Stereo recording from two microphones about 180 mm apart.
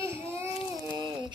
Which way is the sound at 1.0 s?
25° right (ahead or behind).